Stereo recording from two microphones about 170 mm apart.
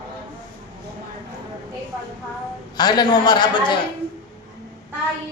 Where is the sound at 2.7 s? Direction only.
25° left (ahead or behind).